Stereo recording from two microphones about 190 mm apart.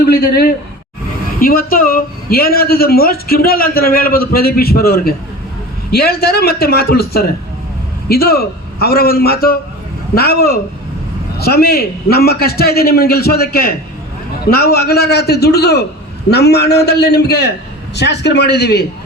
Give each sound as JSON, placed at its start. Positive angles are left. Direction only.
{"t": 0.0, "sound": "a woman's voice", "side_deg": 50}